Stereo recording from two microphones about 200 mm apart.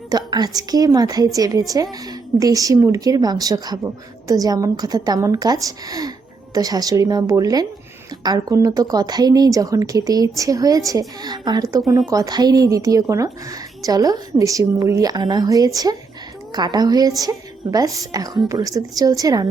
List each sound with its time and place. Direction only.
0.1 s a woman's voice: 20° right (ahead or behind)